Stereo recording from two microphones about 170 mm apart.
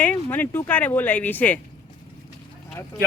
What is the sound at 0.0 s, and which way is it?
Speech, 10° left (ahead or behind).